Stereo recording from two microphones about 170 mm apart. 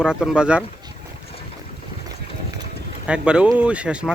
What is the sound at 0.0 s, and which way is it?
Speech, 5° right (ahead or behind).